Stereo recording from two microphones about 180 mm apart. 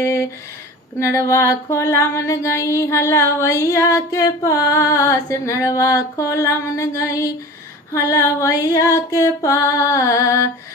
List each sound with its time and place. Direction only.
0.9 s female singing: 15° left (ahead or behind)